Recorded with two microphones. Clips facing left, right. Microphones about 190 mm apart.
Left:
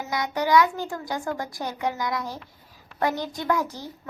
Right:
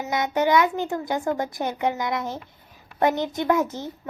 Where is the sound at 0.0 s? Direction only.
25° right (ahead or behind).